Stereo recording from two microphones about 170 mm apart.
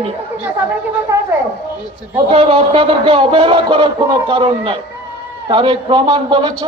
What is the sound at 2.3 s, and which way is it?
A man's voice, 35° right (ahead or behind).